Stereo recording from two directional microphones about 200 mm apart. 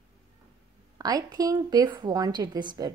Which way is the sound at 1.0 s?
20° right (ahead or behind).